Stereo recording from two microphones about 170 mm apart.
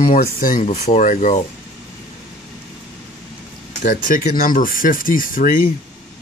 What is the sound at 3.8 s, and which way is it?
Speech, 55° left (ahead or behind).